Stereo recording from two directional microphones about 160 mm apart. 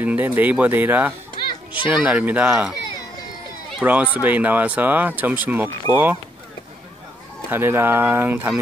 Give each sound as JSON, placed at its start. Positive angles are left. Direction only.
{"t": 0.0, "sound": "speech", "side_deg": -10}
{"t": 3.8, "sound": "speech", "side_deg": -10}
{"t": 7.4, "sound": "speech", "side_deg": -15}